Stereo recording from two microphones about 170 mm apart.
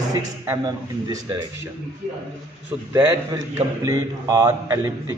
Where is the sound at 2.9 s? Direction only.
20° right (ahead or behind).